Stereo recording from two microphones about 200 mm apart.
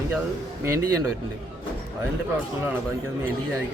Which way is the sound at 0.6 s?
15° right (ahead or behind).